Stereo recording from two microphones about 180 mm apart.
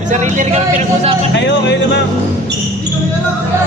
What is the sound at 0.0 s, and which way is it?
A man's voice, 45° right (ahead or behind).